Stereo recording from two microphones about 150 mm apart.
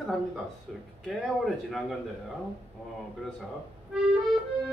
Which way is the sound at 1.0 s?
Centre (ahead or behind).